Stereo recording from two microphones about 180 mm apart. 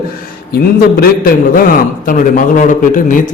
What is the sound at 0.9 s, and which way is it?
A man's voice, 55° left (ahead or behind).